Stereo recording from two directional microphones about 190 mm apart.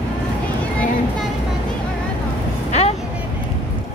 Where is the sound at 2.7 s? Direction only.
35° left (ahead or behind).